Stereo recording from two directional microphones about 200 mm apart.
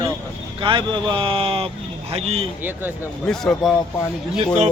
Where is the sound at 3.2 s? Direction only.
Centre (ahead or behind).